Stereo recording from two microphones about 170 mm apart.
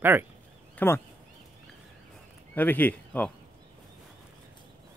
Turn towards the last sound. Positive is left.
turn(degrees=10)  # may be behind; listen again after turning